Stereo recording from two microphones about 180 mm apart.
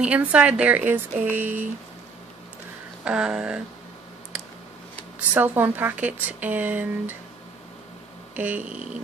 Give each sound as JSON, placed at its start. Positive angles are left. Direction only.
{"t": 0.0, "sound": "speech", "side_deg": -5}
{"t": 3.1, "sound": "a sound", "side_deg": -5}
{"t": 5.3, "sound": "speech", "side_deg": -10}
{"t": 8.4, "sound": "speech", "side_deg": -10}